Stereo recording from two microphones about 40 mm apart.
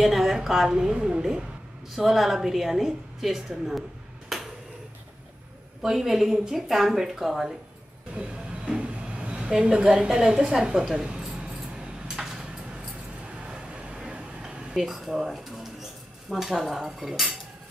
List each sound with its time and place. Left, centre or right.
0.0 s a woman's voice: centre
0.7 s a woman's voice: right
2.0 s a woman's voice: centre
4.3 s a sound: centre
5.8 s speech: centre
8.1 s a woman's voice: right
8.7 s train: right
9.5 s a woman's voice: centre
10.5 s a sound: centre
14.7 s speech: centre